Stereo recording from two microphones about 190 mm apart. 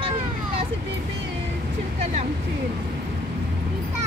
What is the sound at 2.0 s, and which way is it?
Vehicle, 35° right (ahead or behind).